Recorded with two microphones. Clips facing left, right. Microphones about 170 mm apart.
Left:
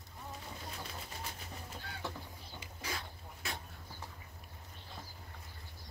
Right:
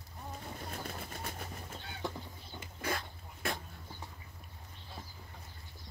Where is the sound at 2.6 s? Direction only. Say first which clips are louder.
Right 6 dB; 55° right (ahead or behind).